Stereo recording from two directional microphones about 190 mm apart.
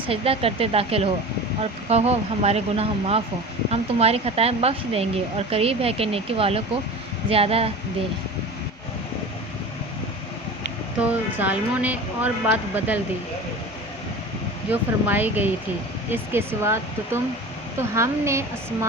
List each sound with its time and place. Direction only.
0.0 s speech: 30° right (ahead or behind)
11.1 s speech: 10° right (ahead or behind)
14.7 s speech: 10° right (ahead or behind)